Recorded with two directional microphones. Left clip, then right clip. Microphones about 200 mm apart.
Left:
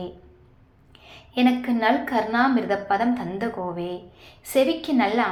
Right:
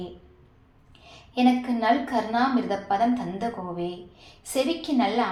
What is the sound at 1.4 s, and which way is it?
A woman's voice, 30° left (ahead or behind).